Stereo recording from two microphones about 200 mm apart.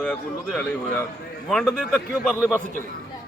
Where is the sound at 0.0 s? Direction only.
5° left (ahead or behind).